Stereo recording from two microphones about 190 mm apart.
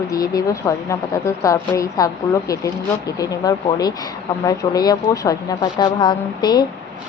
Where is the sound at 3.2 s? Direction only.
20° left (ahead or behind).